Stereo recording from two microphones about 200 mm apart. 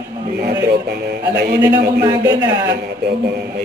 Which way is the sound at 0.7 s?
55° right (ahead or behind).